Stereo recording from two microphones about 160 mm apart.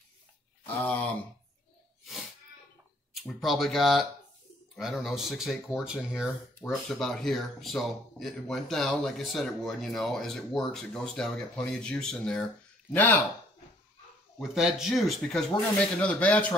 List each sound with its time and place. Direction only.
0.8 s a sound: 10° left (ahead or behind)
3.2 s speech: centre (ahead or behind)
14.5 s speech: centre (ahead or behind)